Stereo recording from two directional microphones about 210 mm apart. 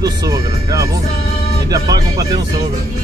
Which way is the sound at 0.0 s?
15° right (ahead or behind).